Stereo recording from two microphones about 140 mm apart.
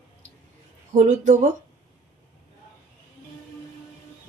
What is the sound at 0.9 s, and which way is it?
Speech, 65° right (ahead or behind).